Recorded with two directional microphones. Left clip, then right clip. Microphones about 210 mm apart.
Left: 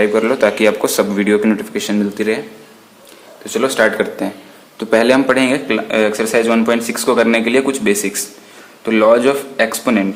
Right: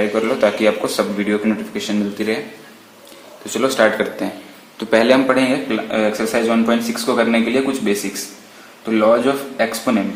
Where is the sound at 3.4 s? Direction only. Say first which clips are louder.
Left 1 dB; 15° left (ahead or behind).